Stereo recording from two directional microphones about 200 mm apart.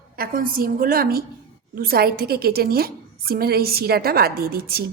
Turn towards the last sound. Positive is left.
turn(degrees=-50)  # may be behind; listen again after turning